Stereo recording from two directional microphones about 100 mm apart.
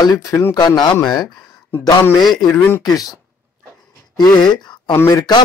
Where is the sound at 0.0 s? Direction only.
35° left (ahead or behind).